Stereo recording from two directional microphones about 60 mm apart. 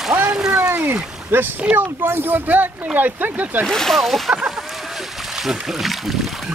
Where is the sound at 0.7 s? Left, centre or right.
Right.